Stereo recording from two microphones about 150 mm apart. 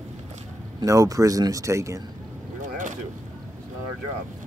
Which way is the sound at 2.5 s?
60° right (ahead or behind).